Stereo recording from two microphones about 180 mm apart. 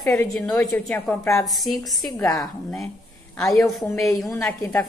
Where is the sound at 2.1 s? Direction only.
20° left (ahead or behind).